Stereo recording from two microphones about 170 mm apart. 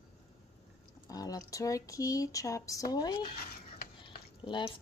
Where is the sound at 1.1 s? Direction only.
20° left (ahead or behind).